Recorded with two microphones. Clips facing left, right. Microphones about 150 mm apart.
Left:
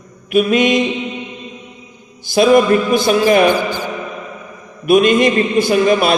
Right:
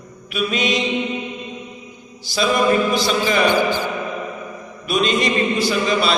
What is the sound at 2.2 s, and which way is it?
A man's voice, 50° left (ahead or behind).